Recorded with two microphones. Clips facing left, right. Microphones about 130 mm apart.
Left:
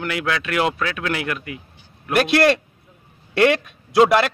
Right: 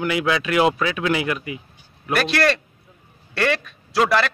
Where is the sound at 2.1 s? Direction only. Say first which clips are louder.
Left 3 dB; 20° left (ahead or behind).